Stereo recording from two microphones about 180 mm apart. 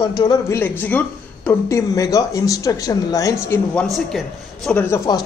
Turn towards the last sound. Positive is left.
turn(degrees=10)  # may be behind; listen again after turning